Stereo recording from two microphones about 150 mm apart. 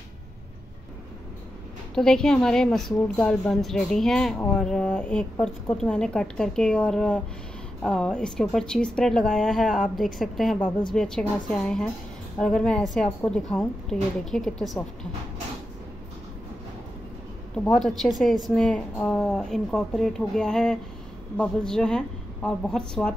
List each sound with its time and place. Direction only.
2.0 s a woman's voice: 5° left (ahead or behind)
17.6 s a woman's voice: 5° left (ahead or behind)